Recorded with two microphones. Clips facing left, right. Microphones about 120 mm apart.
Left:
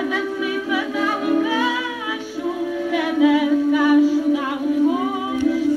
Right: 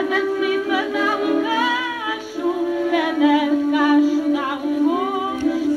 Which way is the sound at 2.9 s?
25° right (ahead or behind).